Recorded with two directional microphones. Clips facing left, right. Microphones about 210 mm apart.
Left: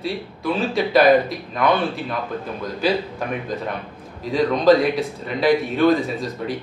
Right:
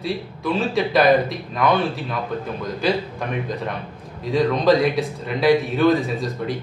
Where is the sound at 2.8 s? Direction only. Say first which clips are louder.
Left 1 dB; centre (ahead or behind).